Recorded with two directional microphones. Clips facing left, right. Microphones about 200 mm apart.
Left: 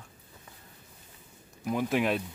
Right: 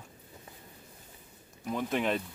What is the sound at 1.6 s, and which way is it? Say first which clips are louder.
Speech: left 3 dB; 5° left (ahead or behind).